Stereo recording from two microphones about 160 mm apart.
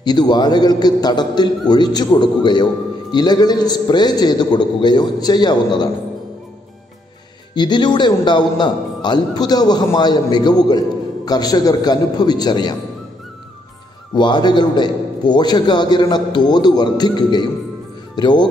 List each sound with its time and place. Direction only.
0.0 s a man's voice: 25° left (ahead or behind)
7.5 s a man's voice: 30° left (ahead or behind)
14.1 s a man's voice: 30° left (ahead or behind)